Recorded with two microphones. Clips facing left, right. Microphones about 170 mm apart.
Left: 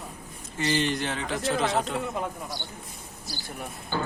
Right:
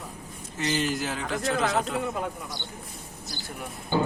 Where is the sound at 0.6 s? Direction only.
Centre (ahead or behind).